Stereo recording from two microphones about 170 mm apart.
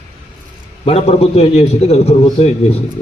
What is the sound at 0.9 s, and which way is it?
A man's voice, 35° left (ahead or behind).